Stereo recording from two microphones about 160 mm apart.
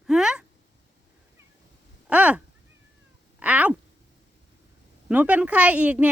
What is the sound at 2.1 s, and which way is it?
A woman's voice, 10° right (ahead or behind).